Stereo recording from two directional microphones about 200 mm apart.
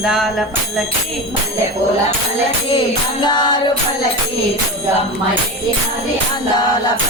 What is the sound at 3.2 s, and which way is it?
Music, 20° left (ahead or behind).